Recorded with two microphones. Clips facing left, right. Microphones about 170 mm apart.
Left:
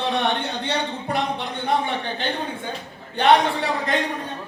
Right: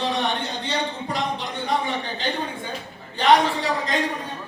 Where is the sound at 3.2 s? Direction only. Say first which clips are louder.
Left 1 dB; 60° left (ahead or behind).